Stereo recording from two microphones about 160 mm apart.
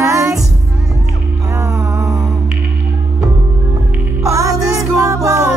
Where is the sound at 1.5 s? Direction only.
20° right (ahead or behind).